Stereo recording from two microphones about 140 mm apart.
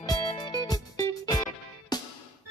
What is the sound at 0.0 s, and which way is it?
Music, 30° left (ahead or behind).